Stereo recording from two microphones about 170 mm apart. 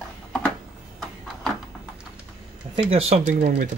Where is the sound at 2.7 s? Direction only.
35° right (ahead or behind).